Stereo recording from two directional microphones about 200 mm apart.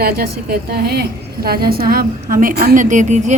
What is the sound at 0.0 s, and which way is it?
A woman's voice, 50° right (ahead or behind).